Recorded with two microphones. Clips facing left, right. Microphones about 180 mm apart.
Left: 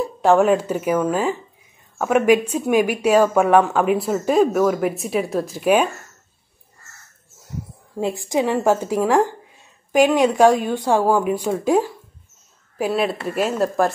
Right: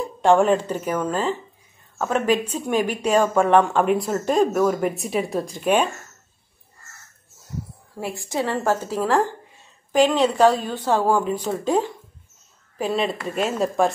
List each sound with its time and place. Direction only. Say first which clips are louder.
0.2 s speech: left 1 dB; 5° left (ahead or behind)
7.9 s speech: left 7 dB; 20° left (ahead or behind); by 13.9 s centre (ahead or behind)